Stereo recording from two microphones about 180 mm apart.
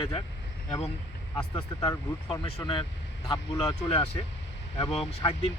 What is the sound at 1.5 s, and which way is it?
Speech, 20° left (ahead or behind).